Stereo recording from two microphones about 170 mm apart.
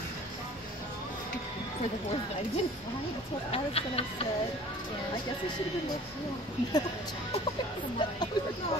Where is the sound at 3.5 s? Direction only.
35° left (ahead or behind).